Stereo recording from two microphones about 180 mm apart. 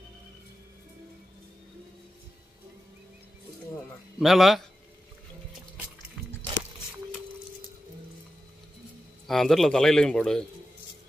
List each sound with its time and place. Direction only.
4.2 s speech: centre (ahead or behind)
9.3 s speech: centre (ahead or behind)